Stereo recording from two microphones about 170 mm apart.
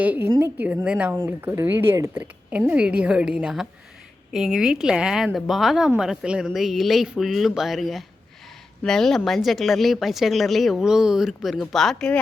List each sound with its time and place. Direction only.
0.0 s a woman's voice: 10° right (ahead or behind)